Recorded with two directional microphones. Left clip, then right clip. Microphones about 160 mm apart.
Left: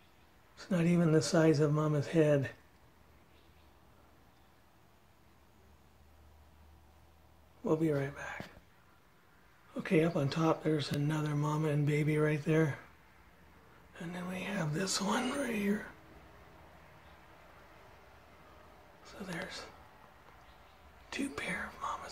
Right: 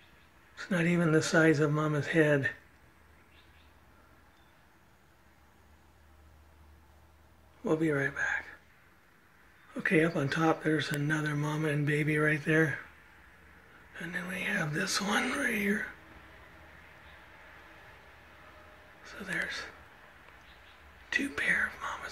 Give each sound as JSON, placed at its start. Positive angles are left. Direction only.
{"t": 0.6, "sound": "speech", "side_deg": 10}
{"t": 7.8, "sound": "speech", "side_deg": 10}
{"t": 9.8, "sound": "speech", "side_deg": 10}
{"t": 13.9, "sound": "speech", "side_deg": 15}
{"t": 19.1, "sound": "speech", "side_deg": 15}
{"t": 21.1, "sound": "speech", "side_deg": 15}